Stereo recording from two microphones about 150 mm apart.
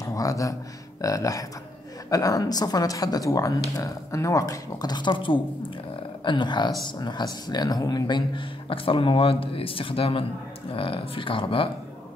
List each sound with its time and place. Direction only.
0.0 s speech: 20° left (ahead or behind)